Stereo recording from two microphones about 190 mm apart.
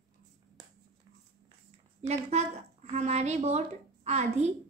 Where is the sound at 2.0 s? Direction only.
35° right (ahead or behind).